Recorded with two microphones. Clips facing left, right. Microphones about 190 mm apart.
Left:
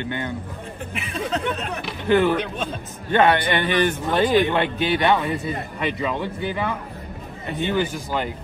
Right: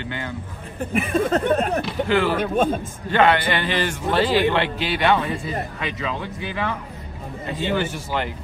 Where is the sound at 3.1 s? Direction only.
20° left (ahead or behind).